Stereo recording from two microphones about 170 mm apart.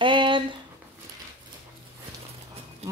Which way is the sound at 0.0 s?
30° right (ahead or behind).